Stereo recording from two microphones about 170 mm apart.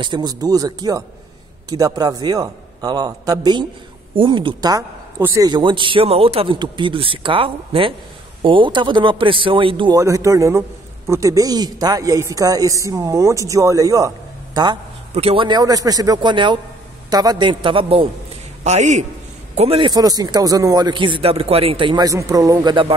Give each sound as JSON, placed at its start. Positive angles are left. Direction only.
{"t": 0.0, "sound": "a man's voice", "side_deg": -25}
{"t": 5.5, "sound": "speech", "side_deg": -30}
{"t": 9.9, "sound": "a man's voice", "side_deg": -20}
{"t": 18.6, "sound": "a man's voice", "side_deg": -45}
{"t": 19.9, "sound": "a man's voice", "side_deg": -25}